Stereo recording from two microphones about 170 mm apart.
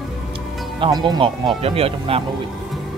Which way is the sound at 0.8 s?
25° right (ahead or behind).